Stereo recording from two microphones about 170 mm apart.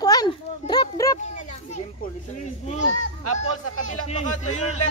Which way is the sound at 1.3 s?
45° left (ahead or behind).